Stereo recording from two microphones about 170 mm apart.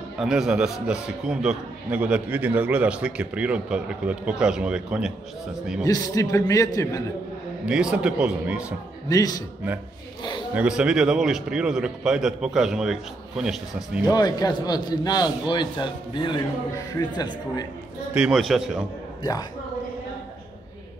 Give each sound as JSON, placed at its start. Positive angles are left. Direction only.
{"t": 0.2, "sound": "a man's voice", "side_deg": -5}
{"t": 5.9, "sound": "a man's voice", "side_deg": 20}
{"t": 7.6, "sound": "a man's voice", "side_deg": -5}
{"t": 9.1, "sound": "a man's voice", "side_deg": 20}
{"t": 10.5, "sound": "a man's voice", "side_deg": -5}
{"t": 14.0, "sound": "a man's voice", "side_deg": 25}
{"t": 18.1, "sound": "a man's voice", "side_deg": 0}